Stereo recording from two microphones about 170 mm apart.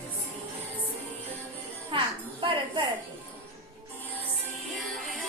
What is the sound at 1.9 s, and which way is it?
Music, 30° right (ahead or behind).